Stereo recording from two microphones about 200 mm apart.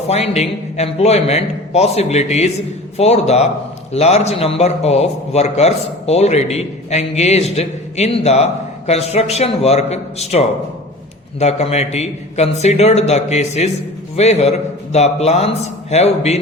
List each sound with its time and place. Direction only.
0.1 s a man's voice: 30° left (ahead or behind)